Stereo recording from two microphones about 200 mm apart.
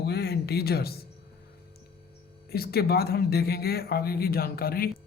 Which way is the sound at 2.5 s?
50° left (ahead or behind).